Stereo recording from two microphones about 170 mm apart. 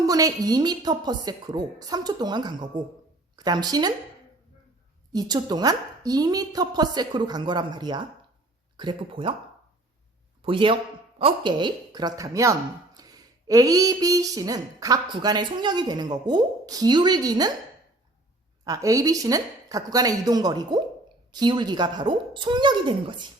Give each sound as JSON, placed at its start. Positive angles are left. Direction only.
{"t": 0.0, "sound": "a woman's voice", "side_deg": -20}
{"t": 5.1, "sound": "a woman's voice", "side_deg": -25}
{"t": 10.4, "sound": "a woman's voice", "side_deg": -30}
{"t": 18.6, "sound": "a woman's voice", "side_deg": -20}